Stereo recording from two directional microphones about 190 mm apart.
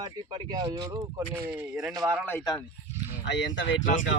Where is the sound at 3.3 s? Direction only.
70° left (ahead or behind).